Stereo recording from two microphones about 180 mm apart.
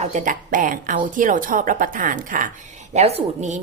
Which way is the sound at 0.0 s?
45° right (ahead or behind).